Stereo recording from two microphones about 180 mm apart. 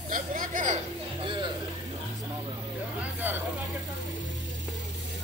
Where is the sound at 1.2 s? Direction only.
25° right (ahead or behind).